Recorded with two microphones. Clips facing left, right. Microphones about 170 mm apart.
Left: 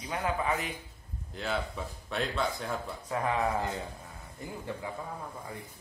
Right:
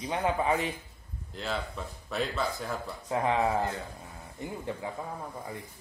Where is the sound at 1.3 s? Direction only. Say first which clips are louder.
Left 1 dB; centre (ahead or behind).